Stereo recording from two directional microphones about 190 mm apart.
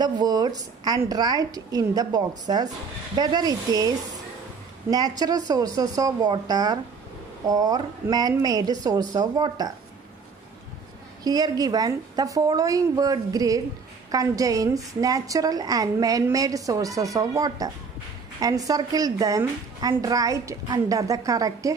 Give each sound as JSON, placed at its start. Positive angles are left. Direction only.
{"t": 0.0, "sound": "a woman's voice", "side_deg": -20}
{"t": 4.9, "sound": "a woman's voice", "side_deg": -20}
{"t": 11.2, "sound": "a woman's voice", "side_deg": -20}